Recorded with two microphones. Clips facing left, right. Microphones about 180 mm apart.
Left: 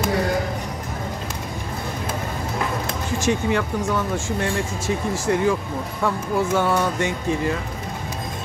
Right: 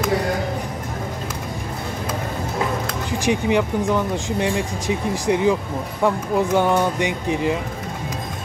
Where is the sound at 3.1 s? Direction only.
15° right (ahead or behind).